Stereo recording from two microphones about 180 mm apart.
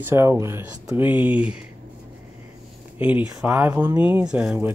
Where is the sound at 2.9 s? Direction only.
10° right (ahead or behind).